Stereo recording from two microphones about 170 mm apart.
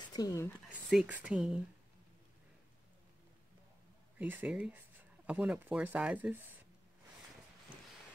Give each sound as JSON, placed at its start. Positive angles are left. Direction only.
{"t": 0.1, "sound": "speech", "side_deg": 20}
{"t": 0.7, "sound": "speech", "side_deg": -5}
{"t": 4.2, "sound": "speech", "side_deg": -10}